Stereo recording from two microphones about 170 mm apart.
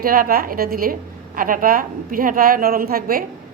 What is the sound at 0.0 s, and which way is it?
A woman's voice, 60° right (ahead or behind).